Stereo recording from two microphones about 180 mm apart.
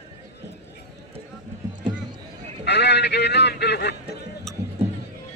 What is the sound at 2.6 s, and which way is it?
Speech, 70° left (ahead or behind).